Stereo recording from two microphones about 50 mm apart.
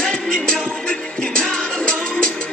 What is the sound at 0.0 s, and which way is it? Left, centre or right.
Music, centre.